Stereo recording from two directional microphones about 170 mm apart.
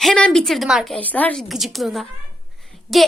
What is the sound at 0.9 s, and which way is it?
A woman's voice, 10° left (ahead or behind).